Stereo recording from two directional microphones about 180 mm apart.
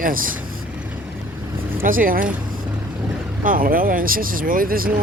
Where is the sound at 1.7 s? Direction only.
50° right (ahead or behind).